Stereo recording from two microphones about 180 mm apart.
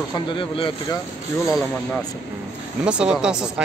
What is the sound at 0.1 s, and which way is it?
Speech, 25° left (ahead or behind).